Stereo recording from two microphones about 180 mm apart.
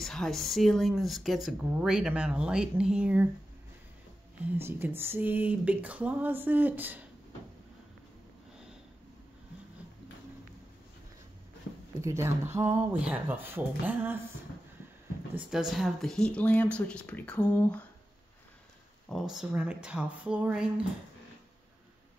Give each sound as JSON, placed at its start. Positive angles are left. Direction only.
{"t": 0.0, "sound": "speech", "side_deg": 0}
{"t": 4.5, "sound": "speech", "side_deg": -10}
{"t": 12.0, "sound": "speech", "side_deg": -15}
{"t": 15.3, "sound": "speech", "side_deg": -5}
{"t": 19.0, "sound": "speech", "side_deg": 0}